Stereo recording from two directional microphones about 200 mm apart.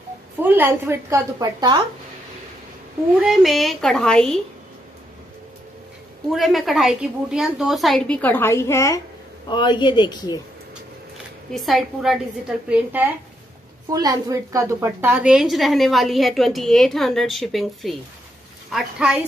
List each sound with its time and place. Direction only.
0.4 s a woman's voice: 10° right (ahead or behind)
3.2 s a woman's voice: centre (ahead or behind)
6.3 s a woman's voice: centre (ahead or behind); by 10.4 s 20° left (ahead or behind)
11.5 s a woman's voice: centre (ahead or behind)